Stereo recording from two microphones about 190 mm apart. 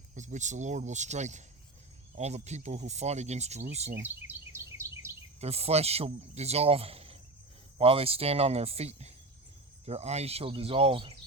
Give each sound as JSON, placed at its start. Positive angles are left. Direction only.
{"t": 0.1, "sound": "speech", "side_deg": -40}
{"t": 4.0, "sound": "speech", "side_deg": -10}
{"t": 4.8, "sound": "bird vocalization", "side_deg": -15}
{"t": 5.4, "sound": "speech", "side_deg": -35}